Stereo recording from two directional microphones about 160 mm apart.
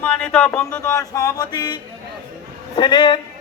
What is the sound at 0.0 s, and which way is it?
Music, 5° left (ahead or behind).